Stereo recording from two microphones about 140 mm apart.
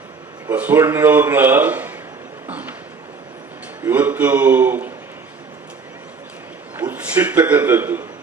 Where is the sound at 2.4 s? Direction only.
10° right (ahead or behind).